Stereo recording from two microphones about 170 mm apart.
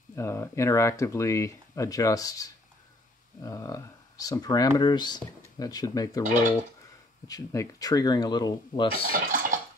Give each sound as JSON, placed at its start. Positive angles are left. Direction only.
{"t": 0.1, "sound": "speech", "side_deg": 15}
{"t": 7.2, "sound": "speech", "side_deg": 20}
{"t": 8.9, "sound": "speech", "side_deg": -60}